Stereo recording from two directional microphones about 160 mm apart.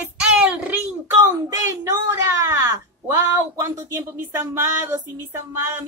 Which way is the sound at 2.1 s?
15° right (ahead or behind).